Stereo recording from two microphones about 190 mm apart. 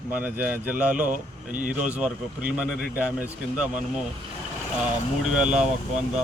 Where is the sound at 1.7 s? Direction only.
5° right (ahead or behind).